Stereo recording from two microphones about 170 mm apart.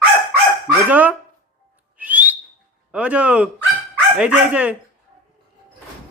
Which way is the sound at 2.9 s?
5° right (ahead or behind).